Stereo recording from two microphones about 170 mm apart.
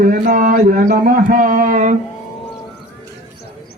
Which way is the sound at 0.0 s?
55° right (ahead or behind).